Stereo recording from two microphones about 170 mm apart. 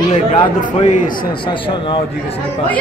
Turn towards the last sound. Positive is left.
turn(degrees=45)  # may be behind; listen again after turning